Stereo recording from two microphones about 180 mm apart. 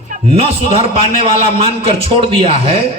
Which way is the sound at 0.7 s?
30° right (ahead or behind).